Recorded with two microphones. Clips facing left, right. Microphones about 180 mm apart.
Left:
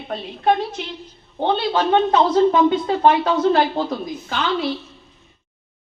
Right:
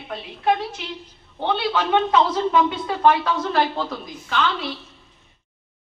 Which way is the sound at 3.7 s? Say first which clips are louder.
Left 5 dB; 40° left (ahead or behind).